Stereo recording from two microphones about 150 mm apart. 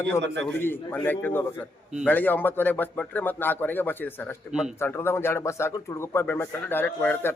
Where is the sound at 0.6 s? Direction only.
15° left (ahead or behind).